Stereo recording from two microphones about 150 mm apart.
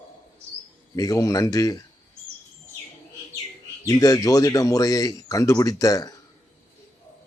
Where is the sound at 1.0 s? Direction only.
25° left (ahead or behind).